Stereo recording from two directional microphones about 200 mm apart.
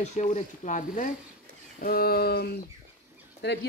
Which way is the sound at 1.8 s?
50° left (ahead or behind).